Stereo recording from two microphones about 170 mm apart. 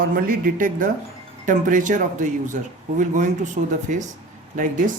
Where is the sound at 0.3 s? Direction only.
55° right (ahead or behind).